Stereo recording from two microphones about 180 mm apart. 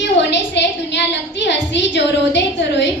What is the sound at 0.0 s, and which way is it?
A woman's voice, 75° left (ahead or behind).